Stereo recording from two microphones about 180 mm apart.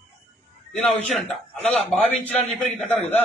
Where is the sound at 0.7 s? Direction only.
Centre (ahead or behind).